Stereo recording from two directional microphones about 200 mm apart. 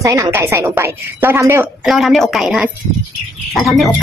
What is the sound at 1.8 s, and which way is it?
Speech, centre (ahead or behind).